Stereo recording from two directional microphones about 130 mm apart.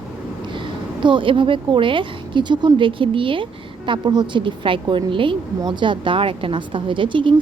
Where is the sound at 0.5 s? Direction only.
40° right (ahead or behind).